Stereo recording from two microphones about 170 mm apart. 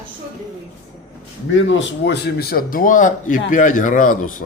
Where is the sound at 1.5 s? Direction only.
90° left; by 4.4 s 50° left (ahead or behind).